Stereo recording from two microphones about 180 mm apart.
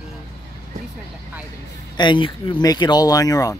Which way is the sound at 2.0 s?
25° left (ahead or behind).